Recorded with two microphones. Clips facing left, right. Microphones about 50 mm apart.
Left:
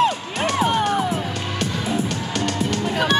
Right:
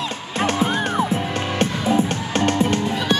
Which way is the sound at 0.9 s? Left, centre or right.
Right.